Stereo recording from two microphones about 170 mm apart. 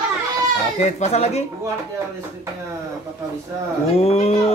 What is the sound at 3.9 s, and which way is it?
Speech, 35° left (ahead or behind).